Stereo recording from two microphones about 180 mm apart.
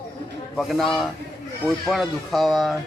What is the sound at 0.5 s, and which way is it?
Speech, centre (ahead or behind).